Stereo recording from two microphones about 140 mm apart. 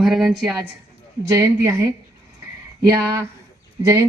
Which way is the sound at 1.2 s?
20° right (ahead or behind).